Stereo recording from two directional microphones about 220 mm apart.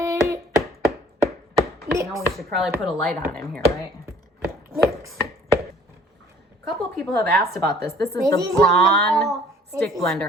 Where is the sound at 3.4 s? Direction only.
45° right (ahead or behind).